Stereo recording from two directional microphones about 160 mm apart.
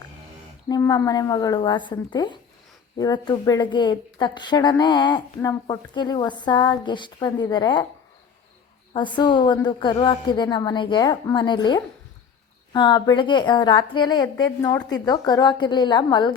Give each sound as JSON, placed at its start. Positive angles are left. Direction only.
{"t": 0.7, "sound": "speech", "side_deg": 25}
{"t": 8.9, "sound": "speech", "side_deg": 30}